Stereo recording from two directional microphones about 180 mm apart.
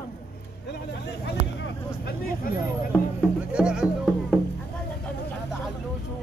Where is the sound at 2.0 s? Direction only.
55° left (ahead or behind).